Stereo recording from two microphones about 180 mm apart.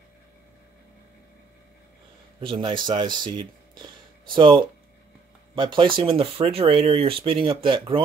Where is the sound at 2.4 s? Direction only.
30° right (ahead or behind).